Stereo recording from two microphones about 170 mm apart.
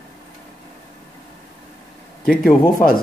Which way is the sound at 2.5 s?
60° left (ahead or behind).